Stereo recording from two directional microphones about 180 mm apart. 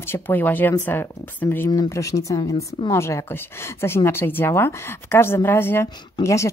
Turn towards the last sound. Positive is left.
turn(degrees=15)  # may be behind; listen again after turning